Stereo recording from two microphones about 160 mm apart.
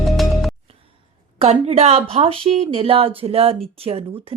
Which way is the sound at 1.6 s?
40° right (ahead or behind).